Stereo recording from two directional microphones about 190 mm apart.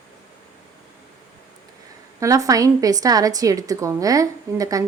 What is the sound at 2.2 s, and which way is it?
A woman's voice, 15° right (ahead or behind).